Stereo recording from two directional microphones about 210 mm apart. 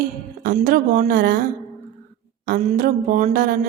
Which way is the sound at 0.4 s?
40° right (ahead or behind).